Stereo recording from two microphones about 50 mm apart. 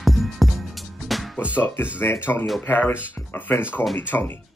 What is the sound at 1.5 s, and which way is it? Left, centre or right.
Speech, left.